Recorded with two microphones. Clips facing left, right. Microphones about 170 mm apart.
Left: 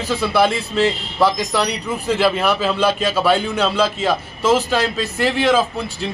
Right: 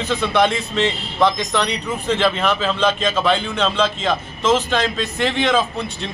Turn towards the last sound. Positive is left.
turn(degrees=5)  # may be behind; listen again after turning